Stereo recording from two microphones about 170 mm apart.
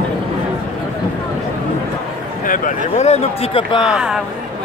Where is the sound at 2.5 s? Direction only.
45° left (ahead or behind).